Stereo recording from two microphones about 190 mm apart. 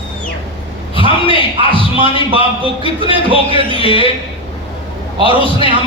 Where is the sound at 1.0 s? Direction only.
25° right (ahead or behind).